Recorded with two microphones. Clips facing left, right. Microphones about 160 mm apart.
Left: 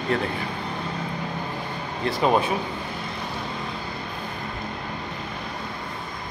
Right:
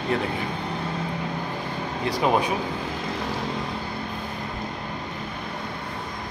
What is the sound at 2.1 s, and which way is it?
Speech, 15° right (ahead or behind).